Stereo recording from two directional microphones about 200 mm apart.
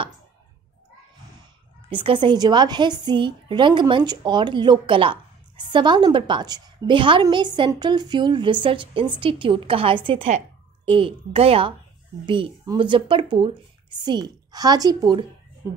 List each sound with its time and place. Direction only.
1.9 s a woman's voice: 25° right (ahead or behind)